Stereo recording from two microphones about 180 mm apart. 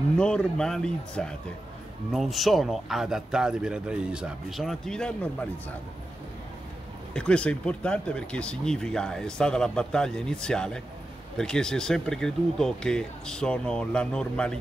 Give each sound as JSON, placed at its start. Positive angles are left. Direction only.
{"t": 0.2, "sound": "speech", "side_deg": 5}
{"t": 7.2, "sound": "speech", "side_deg": 5}